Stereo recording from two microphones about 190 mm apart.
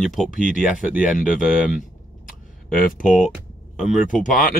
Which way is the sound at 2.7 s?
45° left (ahead or behind).